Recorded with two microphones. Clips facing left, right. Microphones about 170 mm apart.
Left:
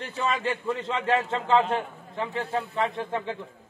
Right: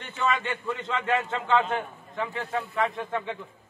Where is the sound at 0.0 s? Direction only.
35° left (ahead or behind).